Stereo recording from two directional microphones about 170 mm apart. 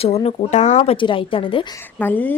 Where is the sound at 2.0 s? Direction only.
10° left (ahead or behind).